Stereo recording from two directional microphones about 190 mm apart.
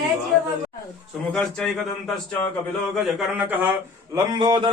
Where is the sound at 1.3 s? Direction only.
5° left (ahead or behind).